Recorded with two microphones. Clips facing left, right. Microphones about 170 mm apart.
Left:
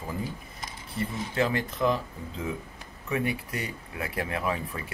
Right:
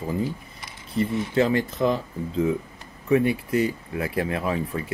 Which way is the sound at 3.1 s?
30° right (ahead or behind).